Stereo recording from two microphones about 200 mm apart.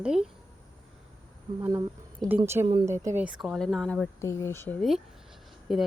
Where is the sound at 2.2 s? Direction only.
15° right (ahead or behind); by 4.1 s centre (ahead or behind).